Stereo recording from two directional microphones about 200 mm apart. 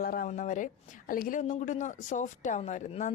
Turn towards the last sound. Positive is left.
turn(degrees=35)  # may be behind; listen again after turning